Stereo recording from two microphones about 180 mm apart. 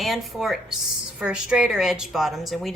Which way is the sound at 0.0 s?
Centre (ahead or behind).